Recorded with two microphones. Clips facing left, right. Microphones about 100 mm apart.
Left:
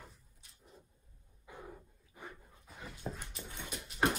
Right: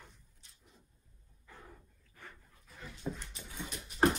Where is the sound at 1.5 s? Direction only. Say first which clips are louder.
Left 5 dB; 15° left (ahead or behind).